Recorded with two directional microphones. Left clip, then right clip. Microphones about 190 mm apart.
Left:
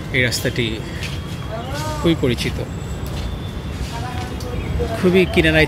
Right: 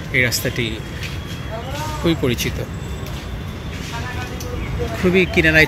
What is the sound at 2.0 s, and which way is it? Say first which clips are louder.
Speech: left 1 dB; centre (ahead or behind).